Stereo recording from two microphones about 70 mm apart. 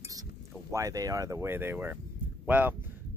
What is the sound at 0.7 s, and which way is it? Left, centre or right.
Speech, right.